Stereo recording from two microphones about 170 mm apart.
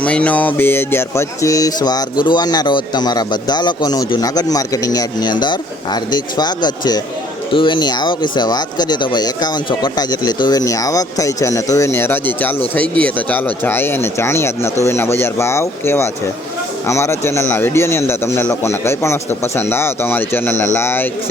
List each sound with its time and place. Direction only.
0.0 s a man's voice: 10° left (ahead or behind)